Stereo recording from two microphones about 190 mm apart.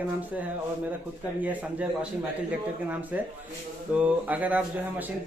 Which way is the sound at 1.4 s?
5° right (ahead or behind).